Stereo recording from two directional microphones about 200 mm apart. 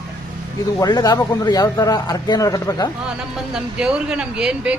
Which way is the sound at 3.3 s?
5° right (ahead or behind).